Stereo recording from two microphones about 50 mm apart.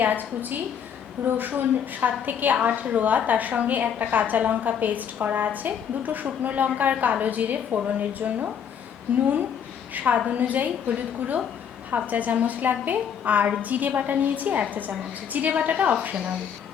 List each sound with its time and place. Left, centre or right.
0.0 s a woman's voice: right